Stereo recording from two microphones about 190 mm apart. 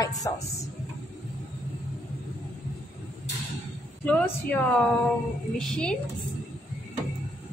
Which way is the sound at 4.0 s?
5° left (ahead or behind).